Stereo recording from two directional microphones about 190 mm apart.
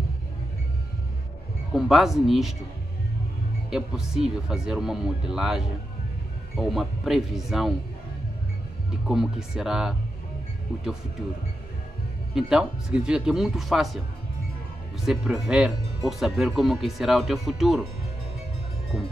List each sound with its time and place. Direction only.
1.7 s speech: centre (ahead or behind)
3.7 s speech: centre (ahead or behind)
9.0 s speech: centre (ahead or behind)
12.4 s speech: 5° right (ahead or behind)
15.0 s speech: 5° right (ahead or behind)